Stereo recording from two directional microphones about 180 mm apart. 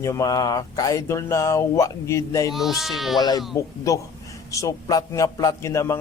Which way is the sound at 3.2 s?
20° left (ahead or behind).